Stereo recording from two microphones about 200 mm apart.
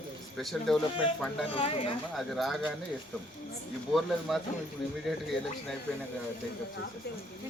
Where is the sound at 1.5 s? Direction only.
30° left (ahead or behind).